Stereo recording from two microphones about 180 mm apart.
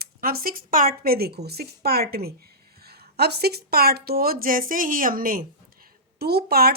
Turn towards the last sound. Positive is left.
turn(degrees=-60)  # may be behind; listen again after turning